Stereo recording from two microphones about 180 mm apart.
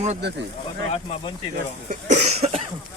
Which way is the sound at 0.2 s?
70° right (ahead or behind).